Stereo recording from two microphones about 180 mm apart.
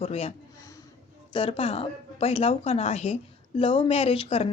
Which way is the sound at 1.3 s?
30° left (ahead or behind).